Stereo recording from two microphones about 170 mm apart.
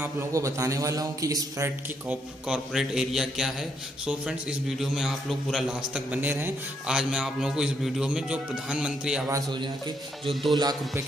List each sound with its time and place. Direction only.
0.0 s a man's voice: 15° right (ahead or behind)
2.4 s a man's voice: 5° right (ahead or behind)
9.3 s a man's voice: 25° right (ahead or behind)